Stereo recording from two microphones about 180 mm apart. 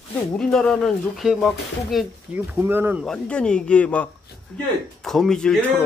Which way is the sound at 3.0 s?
5° left (ahead or behind).